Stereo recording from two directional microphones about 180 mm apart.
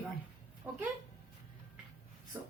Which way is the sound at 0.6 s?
10° right (ahead or behind).